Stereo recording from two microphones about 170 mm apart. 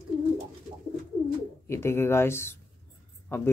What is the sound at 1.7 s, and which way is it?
Speech, 15° left (ahead or behind).